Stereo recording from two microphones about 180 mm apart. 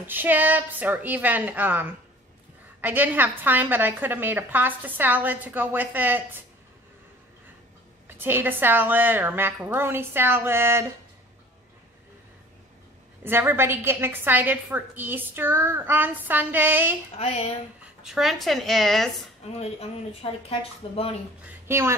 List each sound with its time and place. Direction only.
0.0 s a woman's voice: 10° right (ahead or behind)
8.2 s a woman's voice: 10° right (ahead or behind)
13.2 s a woman's voice: 10° right (ahead or behind)
17.2 s speech: 35° left (ahead or behind)
17.8 s speech: 5° right (ahead or behind)
19.6 s speech: 35° left (ahead or behind)
21.6 s speech: 15° right (ahead or behind)